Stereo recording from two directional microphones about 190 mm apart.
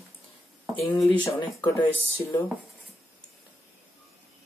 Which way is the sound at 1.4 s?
25° left (ahead or behind).